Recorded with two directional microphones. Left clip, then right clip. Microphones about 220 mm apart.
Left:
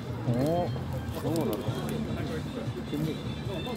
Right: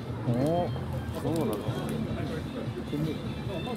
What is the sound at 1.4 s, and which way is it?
Speech, 45° left (ahead or behind).